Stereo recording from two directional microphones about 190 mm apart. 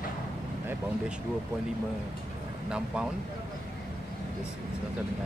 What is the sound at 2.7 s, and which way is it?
Speech, 5° right (ahead or behind).